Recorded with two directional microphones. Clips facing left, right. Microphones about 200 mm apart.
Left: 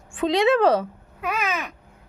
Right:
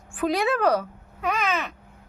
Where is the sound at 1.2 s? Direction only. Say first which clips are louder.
Right 1 dB; 10° left (ahead or behind).